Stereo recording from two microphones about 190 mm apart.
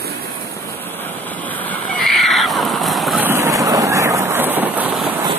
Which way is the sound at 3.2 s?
15° right (ahead or behind).